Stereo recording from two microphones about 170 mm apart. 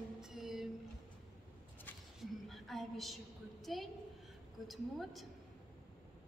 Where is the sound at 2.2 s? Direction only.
Centre (ahead or behind).